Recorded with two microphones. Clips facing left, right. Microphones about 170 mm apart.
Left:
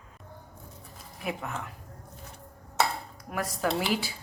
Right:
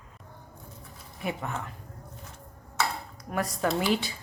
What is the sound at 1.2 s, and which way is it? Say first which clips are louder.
Speech: right 1 dB; centre (ahead or behind).